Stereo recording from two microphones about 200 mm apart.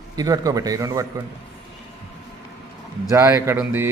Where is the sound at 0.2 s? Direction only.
20° right (ahead or behind).